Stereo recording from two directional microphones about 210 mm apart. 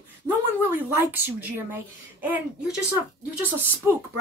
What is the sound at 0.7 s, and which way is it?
A woman's voice, 10° right (ahead or behind).